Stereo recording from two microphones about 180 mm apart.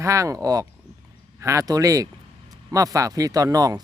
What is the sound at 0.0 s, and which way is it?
A man's voice, 15° right (ahead or behind).